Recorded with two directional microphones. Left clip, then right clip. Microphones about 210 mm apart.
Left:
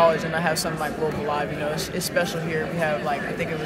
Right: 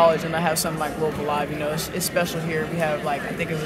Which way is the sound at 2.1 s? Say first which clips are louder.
Even; 5° right (ahead or behind).